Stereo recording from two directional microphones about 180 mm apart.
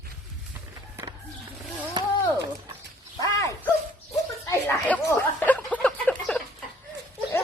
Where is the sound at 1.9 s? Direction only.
20° right (ahead or behind).